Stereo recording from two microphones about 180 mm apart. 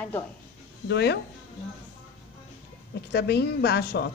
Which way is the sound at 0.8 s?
70° left (ahead or behind).